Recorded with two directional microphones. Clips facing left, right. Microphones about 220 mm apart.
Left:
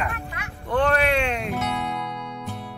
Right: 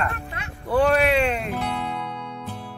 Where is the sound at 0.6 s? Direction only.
5° right (ahead or behind).